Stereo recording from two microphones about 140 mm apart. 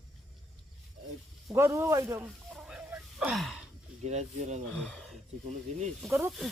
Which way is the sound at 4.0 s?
55° right (ahead or behind).